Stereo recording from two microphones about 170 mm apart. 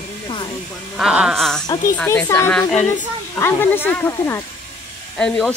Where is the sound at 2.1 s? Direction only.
10° left (ahead or behind).